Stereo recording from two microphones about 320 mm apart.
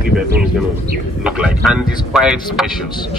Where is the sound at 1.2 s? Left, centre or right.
Centre.